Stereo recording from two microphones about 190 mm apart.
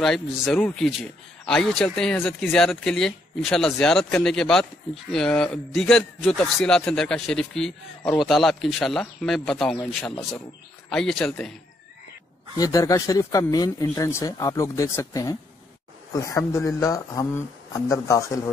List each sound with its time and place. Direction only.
0.0 s speech: 5° left (ahead or behind)
12.5 s speech: 20° left (ahead or behind)